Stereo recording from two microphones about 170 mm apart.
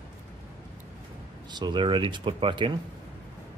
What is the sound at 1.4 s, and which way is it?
Speech, 25° right (ahead or behind).